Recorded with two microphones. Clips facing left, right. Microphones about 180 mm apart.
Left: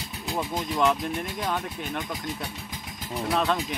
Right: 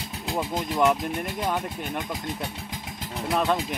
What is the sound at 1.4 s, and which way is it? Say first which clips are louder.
Speech: right 2 dB; 10° right (ahead or behind).